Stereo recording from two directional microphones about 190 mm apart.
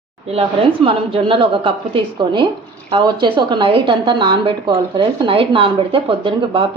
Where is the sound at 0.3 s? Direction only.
30° right (ahead or behind).